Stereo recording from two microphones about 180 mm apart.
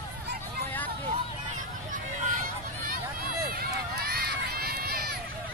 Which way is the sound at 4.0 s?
60° right (ahead or behind).